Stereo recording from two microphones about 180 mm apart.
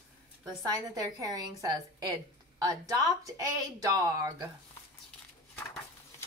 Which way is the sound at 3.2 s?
20° right (ahead or behind).